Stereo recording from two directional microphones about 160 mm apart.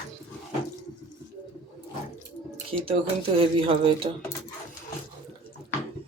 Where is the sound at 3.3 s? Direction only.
35° right (ahead or behind).